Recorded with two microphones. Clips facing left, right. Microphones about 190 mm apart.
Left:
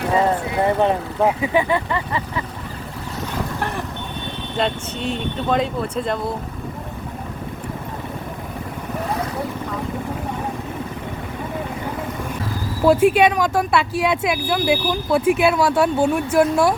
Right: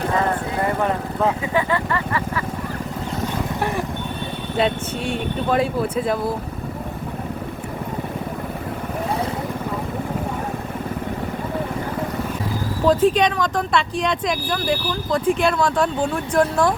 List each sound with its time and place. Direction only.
0.6 s speech: 20° left (ahead or behind)
4.5 s speech: 5° right (ahead or behind)
12.8 s speech: 10° left (ahead or behind)